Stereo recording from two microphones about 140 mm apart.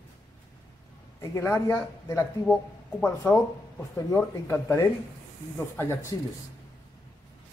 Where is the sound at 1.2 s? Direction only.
20° left (ahead or behind).